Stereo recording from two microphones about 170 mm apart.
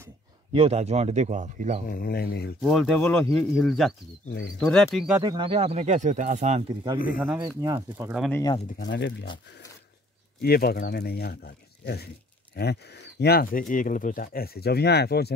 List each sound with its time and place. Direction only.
0.5 s speech: 35° right (ahead or behind)
1.9 s speech: 60° left (ahead or behind)
2.6 s speech: centre (ahead or behind)
5.2 s speech: 30° right (ahead or behind); by 6.6 s 45° right (ahead or behind)
7.2 s speech: 15° right (ahead or behind)
8.3 s speech: 20° left (ahead or behind)
8.7 s speech: 85° left
10.4 s speech: 65° left (ahead or behind)